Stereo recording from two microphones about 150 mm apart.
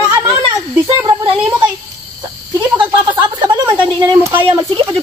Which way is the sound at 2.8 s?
30° right (ahead or behind).